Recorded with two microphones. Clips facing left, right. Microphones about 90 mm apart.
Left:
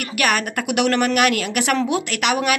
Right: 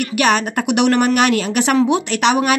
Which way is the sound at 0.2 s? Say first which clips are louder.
Right 4 dB; 25° right (ahead or behind).